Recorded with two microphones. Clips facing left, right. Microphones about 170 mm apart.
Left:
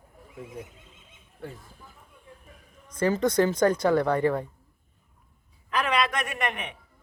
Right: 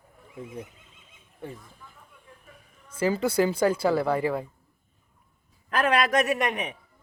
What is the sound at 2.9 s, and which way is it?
A woman's voice, 5° right (ahead or behind).